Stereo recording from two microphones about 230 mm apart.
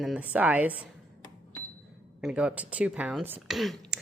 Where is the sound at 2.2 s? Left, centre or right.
Centre.